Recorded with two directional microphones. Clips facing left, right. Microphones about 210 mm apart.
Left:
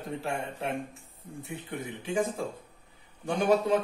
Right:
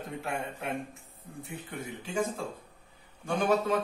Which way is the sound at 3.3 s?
15° left (ahead or behind).